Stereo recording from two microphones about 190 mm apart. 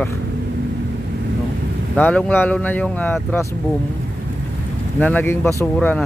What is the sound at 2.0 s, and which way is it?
Speech, 10° left (ahead or behind).